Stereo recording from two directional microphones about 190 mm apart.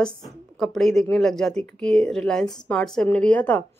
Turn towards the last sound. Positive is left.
turn(degrees=10)  # may be behind; listen again after turning